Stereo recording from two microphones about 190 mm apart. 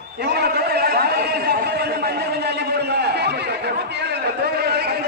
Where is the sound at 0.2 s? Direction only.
60° right (ahead or behind).